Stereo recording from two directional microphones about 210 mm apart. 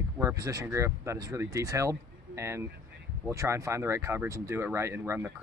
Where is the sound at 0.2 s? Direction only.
15° right (ahead or behind).